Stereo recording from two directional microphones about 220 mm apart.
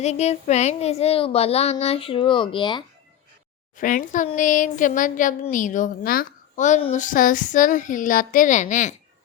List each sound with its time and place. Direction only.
0.0 s speech: 30° left (ahead or behind)
3.8 s speech: 35° left (ahead or behind)